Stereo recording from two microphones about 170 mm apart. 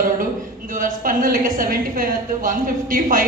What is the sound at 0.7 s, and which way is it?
A woman's voice, 50° right (ahead or behind).